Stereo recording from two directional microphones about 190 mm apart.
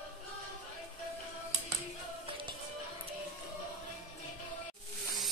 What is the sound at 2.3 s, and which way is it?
Music, 25° right (ahead or behind).